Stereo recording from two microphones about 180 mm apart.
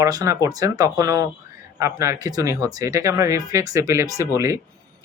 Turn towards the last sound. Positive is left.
turn(degrees=-15)  # may be behind; listen again after turning